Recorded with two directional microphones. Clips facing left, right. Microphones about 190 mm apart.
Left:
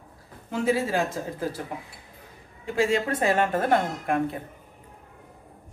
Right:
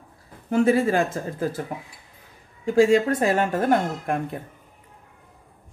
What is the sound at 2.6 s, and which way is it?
Speech, 45° right (ahead or behind).